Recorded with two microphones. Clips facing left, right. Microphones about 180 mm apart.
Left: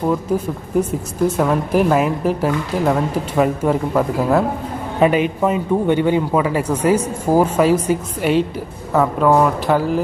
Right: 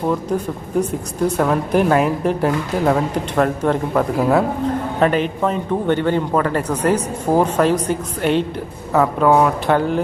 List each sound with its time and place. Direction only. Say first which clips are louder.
0.1 s speech: left 1 dB; 5° left (ahead or behind)